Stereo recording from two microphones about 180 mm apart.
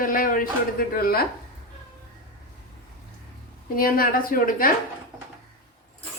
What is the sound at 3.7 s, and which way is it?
Speech, 55° left (ahead or behind).